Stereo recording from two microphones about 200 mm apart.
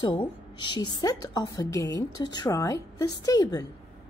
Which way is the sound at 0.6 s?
20° left (ahead or behind).